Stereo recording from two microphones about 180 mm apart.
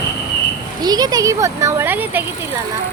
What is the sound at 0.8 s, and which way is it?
Speech, 20° right (ahead or behind).